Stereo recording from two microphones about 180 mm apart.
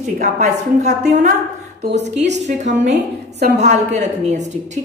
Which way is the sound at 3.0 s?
70° right (ahead or behind).